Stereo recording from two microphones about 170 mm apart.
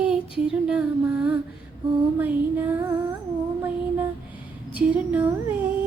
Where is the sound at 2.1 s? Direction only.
10° right (ahead or behind).